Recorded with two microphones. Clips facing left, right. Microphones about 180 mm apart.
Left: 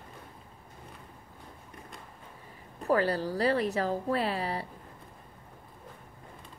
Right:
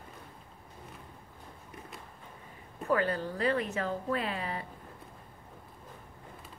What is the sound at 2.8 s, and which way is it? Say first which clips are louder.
A woman's voice: left 3 dB; 35° left (ahead or behind).